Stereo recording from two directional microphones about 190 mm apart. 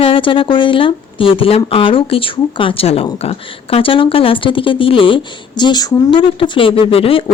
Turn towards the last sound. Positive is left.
turn(degrees=30)  # may be behind; listen again after turning